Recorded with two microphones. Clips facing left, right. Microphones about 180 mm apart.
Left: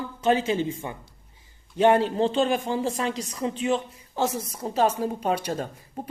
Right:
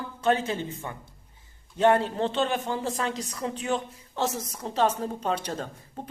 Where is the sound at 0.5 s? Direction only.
25° left (ahead or behind).